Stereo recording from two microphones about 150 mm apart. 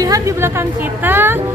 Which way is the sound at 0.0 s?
20° right (ahead or behind).